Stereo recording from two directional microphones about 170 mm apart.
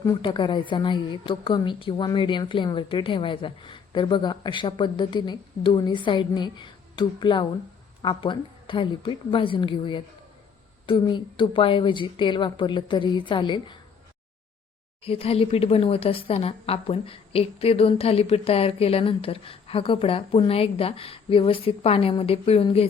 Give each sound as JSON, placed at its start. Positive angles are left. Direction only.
{"t": 0.0, "sound": "a woman's voice", "side_deg": 25}
{"t": 15.0, "sound": "a woman's voice", "side_deg": 35}